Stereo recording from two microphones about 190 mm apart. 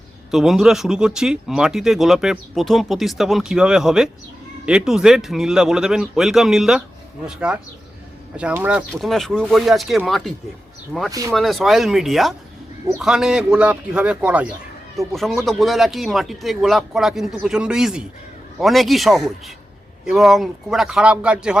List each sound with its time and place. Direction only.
0.3 s speech: centre (ahead or behind)
11.1 s speech: 20° right (ahead or behind)
11.3 s speech: centre (ahead or behind)